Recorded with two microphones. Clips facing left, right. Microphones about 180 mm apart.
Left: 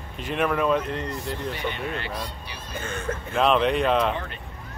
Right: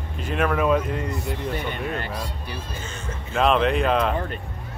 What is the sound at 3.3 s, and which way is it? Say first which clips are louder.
Speech: right 1 dB; centre (ahead or behind).